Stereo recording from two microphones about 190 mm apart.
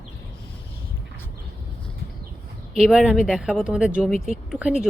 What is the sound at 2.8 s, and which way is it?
Speech, centre (ahead or behind).